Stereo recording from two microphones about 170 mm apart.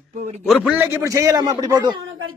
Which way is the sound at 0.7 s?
15° right (ahead or behind).